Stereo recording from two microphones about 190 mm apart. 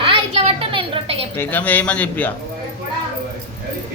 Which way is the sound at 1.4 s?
10° left (ahead or behind).